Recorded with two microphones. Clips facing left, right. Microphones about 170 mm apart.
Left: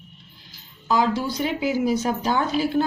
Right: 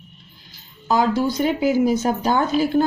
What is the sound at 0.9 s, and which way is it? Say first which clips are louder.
Speech: right 3 dB; 45° right (ahead or behind).